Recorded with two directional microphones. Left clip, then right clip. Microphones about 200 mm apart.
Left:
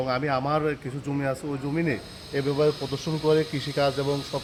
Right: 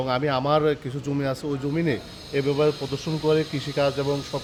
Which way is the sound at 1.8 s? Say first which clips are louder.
Right 1 dB; 50° right (ahead or behind).